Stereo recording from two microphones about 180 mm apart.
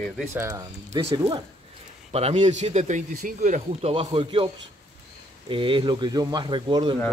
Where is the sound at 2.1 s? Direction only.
35° right (ahead or behind).